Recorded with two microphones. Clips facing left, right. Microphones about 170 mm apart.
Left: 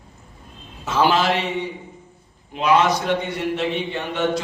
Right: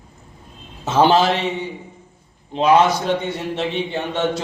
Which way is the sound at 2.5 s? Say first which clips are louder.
Right 5 dB; 25° right (ahead or behind).